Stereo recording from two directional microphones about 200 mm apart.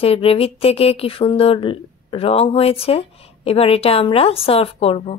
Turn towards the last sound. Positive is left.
turn(degrees=30)  # may be behind; listen again after turning